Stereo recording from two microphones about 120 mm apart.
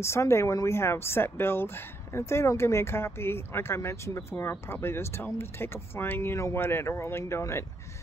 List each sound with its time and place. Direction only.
0.0 s speech: 25° left (ahead or behind)